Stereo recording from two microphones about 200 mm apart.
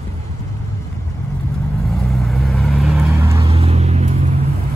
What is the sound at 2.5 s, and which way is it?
Vehicle, centre (ahead or behind).